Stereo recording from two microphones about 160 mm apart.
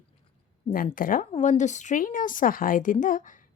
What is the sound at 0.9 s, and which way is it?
Speech, 60° left (ahead or behind).